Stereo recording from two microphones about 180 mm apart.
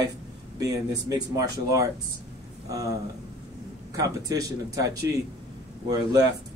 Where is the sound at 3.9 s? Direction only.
20° right (ahead or behind).